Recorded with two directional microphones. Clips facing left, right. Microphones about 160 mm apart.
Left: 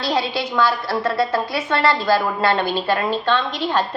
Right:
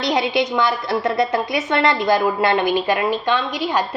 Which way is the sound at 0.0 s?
20° right (ahead or behind).